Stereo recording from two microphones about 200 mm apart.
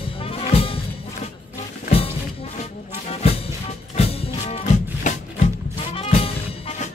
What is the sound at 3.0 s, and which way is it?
Music, 30° left (ahead or behind).